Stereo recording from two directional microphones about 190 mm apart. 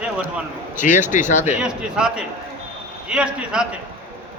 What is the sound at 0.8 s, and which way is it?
Speech, 40° left (ahead or behind).